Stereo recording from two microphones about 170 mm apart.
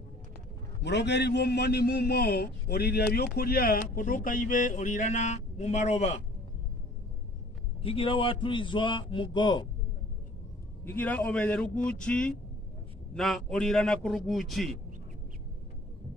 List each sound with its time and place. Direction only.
0.8 s a man's voice: 90° left; by 6.2 s 40° left (ahead or behind)
7.8 s a man's voice: 35° left (ahead or behind)
10.8 s a man's voice: 10° left (ahead or behind)